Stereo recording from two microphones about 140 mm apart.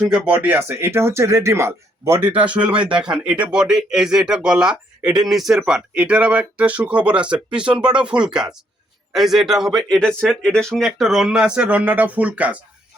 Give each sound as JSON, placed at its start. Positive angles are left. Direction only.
{"t": 0.1, "sound": "speech", "side_deg": -10}